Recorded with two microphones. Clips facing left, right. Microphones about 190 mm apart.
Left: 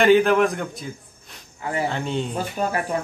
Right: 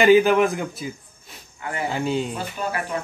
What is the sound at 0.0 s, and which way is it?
A man's voice, centre (ahead or behind).